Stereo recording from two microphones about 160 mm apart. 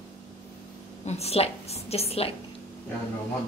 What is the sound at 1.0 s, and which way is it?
A woman's voice, 40° left (ahead or behind).